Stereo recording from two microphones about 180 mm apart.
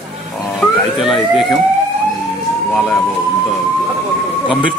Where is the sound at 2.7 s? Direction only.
5° left (ahead or behind).